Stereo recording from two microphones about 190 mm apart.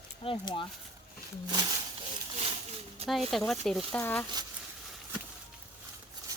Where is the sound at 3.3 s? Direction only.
Centre (ahead or behind).